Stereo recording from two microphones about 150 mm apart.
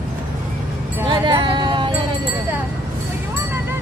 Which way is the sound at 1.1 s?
35° right (ahead or behind).